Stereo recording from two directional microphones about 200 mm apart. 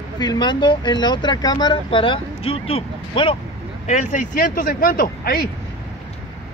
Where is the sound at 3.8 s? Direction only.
40° left (ahead or behind).